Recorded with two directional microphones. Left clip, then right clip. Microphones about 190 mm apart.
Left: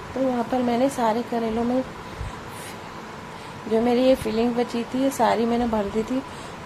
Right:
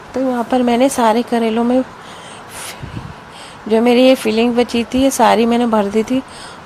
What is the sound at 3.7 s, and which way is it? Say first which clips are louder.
Speech: right 9 dB; 30° right (ahead or behind).